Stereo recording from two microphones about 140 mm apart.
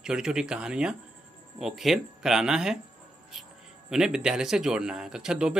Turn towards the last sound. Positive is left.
turn(degrees=-5)  # may be behind; listen again after turning